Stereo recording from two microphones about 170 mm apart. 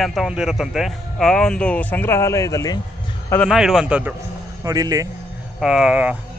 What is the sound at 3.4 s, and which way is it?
Speech, centre (ahead or behind).